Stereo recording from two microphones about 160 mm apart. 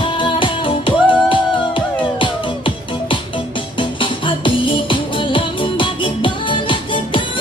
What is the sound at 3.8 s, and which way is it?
Music, 30° left (ahead or behind).